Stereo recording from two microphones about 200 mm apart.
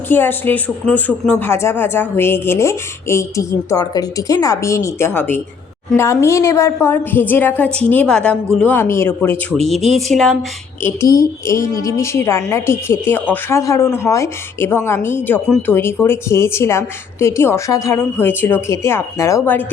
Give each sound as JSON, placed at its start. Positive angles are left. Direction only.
{"t": 0.1, "sound": "speech", "side_deg": 10}
{"t": 9.8, "sound": "a woman's voice", "side_deg": -35}
{"t": 10.8, "sound": "speech", "side_deg": 15}